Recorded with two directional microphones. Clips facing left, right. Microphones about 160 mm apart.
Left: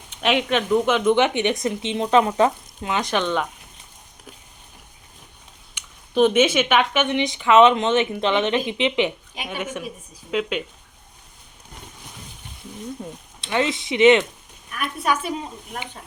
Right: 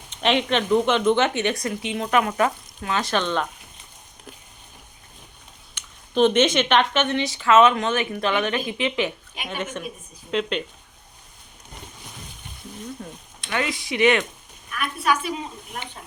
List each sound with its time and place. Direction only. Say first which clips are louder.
0.2 s speech: even; 5° left (ahead or behind)
5.7 s speech: left 2 dB; 10° left (ahead or behind)
13.0 s speech: left 3 dB; 20° left (ahead or behind)